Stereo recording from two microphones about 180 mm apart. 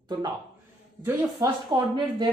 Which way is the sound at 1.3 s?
25° right (ahead or behind).